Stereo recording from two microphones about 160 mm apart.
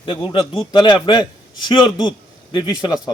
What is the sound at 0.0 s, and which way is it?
A man's voice, 30° left (ahead or behind).